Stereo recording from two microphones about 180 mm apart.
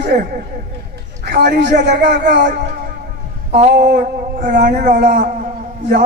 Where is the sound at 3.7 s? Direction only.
55° right (ahead or behind).